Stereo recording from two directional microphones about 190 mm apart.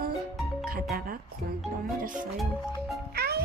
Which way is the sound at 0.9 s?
55° right (ahead or behind).